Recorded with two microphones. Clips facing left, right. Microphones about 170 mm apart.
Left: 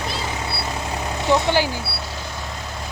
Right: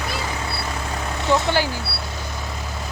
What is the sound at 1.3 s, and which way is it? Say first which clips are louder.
Speech: left 1 dB; 15° left (ahead or behind).